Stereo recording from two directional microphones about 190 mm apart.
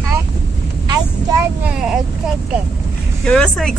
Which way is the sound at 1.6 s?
5° right (ahead or behind).